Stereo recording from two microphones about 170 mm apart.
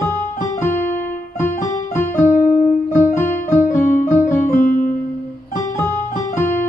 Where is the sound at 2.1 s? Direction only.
50° left (ahead or behind).